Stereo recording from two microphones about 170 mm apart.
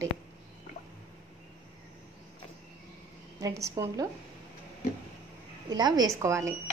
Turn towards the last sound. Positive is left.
turn(degrees=-15)  # may be behind; listen again after turning